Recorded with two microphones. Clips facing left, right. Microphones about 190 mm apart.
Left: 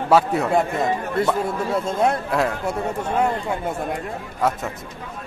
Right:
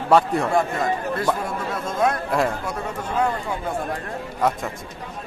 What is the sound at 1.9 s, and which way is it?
Speech, 30° left (ahead or behind).